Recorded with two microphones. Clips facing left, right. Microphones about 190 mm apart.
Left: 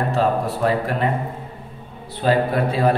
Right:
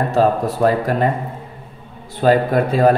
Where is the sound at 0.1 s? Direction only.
40° right (ahead or behind).